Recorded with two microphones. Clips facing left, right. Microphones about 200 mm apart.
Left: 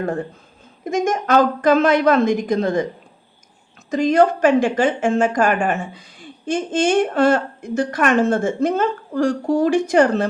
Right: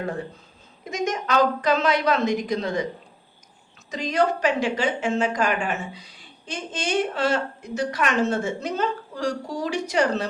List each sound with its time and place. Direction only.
0.0 s a woman's voice: 50° left (ahead or behind)
3.8 s a woman's voice: 50° left (ahead or behind)